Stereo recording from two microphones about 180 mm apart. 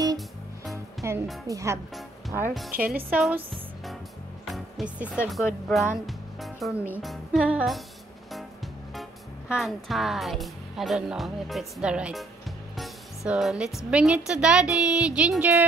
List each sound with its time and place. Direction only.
1.0 s music: 15° right (ahead or behind)
1.5 s a woman's voice: 15° right (ahead or behind)
2.7 s a woman's voice: 55° right (ahead or behind)
3.0 s a woman's voice: 5° right (ahead or behind)
4.5 s speech: 5° right (ahead or behind)
6.0 s music: centre (ahead or behind)
7.0 s a woman's voice: centre (ahead or behind)
9.5 s a woman's voice: centre (ahead or behind)